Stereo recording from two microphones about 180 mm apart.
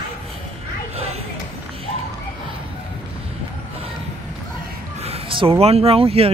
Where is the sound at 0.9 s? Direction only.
35° right (ahead or behind).